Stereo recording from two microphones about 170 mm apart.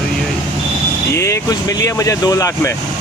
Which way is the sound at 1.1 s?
15° left (ahead or behind).